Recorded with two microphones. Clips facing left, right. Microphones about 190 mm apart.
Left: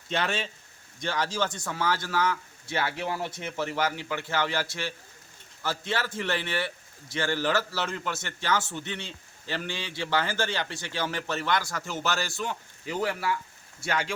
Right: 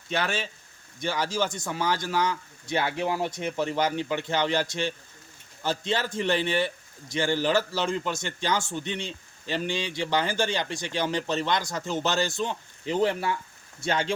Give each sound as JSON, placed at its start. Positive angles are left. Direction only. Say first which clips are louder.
{"t": 0.1, "sound": "a man's voice", "louder": "right 1 dB", "side_deg": 0}